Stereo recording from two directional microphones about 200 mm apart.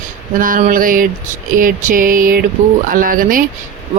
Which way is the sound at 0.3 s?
45° right (ahead or behind).